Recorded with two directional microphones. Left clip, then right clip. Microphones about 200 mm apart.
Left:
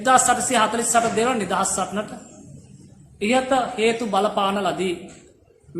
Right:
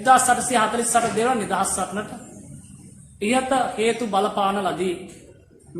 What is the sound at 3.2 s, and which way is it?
A man's voice, 25° left (ahead or behind).